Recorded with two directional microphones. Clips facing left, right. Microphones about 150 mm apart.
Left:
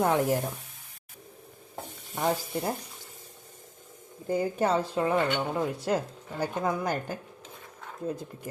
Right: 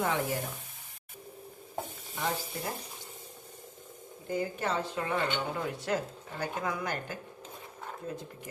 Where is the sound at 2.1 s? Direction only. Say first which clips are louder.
Left 7 dB; 45° left (ahead or behind).